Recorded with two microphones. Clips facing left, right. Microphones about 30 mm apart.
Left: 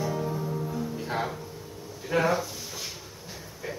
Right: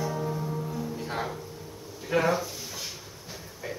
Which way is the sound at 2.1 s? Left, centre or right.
Centre.